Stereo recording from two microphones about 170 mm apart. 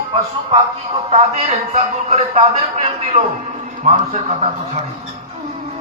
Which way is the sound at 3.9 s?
40° right (ahead or behind).